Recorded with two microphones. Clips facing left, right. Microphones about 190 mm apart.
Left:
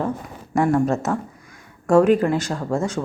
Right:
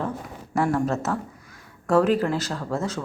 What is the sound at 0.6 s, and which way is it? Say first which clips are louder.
Speech: left 4 dB; 15° left (ahead or behind).